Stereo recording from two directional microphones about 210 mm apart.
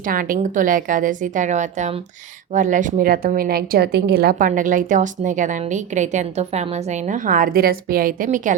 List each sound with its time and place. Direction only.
0.0 s a woman's voice: 40° right (ahead or behind)